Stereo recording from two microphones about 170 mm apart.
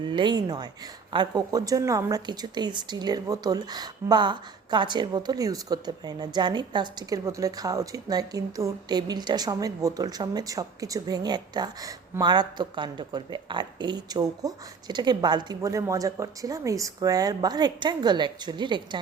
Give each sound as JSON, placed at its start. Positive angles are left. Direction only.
{"t": 0.0, "sound": "a woman's voice", "side_deg": -25}